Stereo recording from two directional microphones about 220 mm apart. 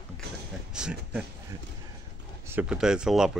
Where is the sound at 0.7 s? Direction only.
5° right (ahead or behind).